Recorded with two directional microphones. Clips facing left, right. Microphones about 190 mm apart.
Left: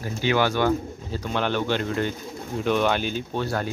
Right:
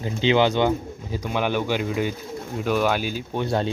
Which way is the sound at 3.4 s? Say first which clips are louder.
Right 6 dB; 25° right (ahead or behind).